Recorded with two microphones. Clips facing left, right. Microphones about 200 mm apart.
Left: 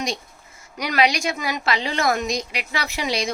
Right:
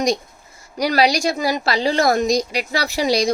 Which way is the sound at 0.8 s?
35° right (ahead or behind).